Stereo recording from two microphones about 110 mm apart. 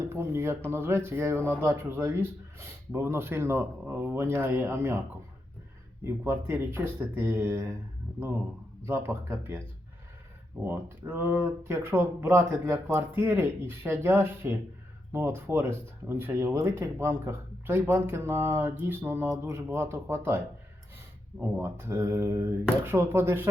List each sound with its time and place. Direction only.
0.0 s speech: 25° right (ahead or behind)
8.8 s speech: 25° right (ahead or behind)